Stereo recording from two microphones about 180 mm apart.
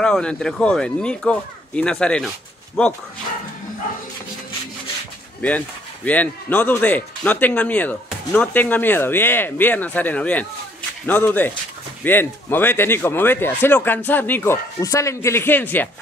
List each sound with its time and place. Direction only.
0.0 s speech: 5° left (ahead or behind)
6.0 s speech: 10° left (ahead or behind)